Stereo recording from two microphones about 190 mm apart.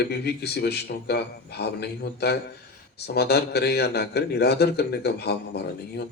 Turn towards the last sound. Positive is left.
turn(degrees=60)  # may be behind; listen again after turning